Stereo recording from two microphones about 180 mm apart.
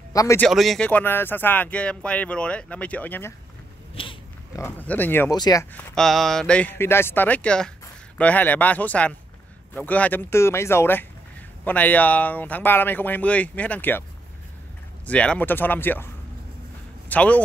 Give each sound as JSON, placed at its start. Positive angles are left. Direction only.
{"t": 0.1, "sound": "speech", "side_deg": 20}
{"t": 0.4, "sound": "speech", "side_deg": 0}
{"t": 3.9, "sound": "a sound", "side_deg": 30}
{"t": 4.6, "sound": "speech", "side_deg": 10}
{"t": 15.0, "sound": "speech", "side_deg": 5}
{"t": 17.1, "sound": "speech", "side_deg": 10}